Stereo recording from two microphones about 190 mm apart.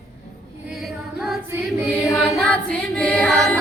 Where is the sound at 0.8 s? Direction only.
Centre (ahead or behind).